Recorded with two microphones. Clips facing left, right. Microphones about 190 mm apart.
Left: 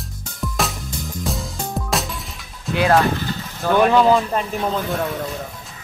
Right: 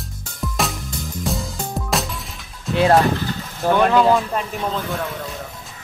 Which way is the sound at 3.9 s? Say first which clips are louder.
Left 1 dB; centre (ahead or behind).